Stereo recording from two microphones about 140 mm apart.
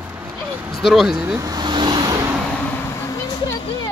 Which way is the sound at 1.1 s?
25° right (ahead or behind).